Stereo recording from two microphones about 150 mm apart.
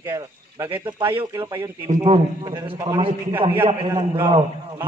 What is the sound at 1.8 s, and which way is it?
A man's voice, 40° right (ahead or behind).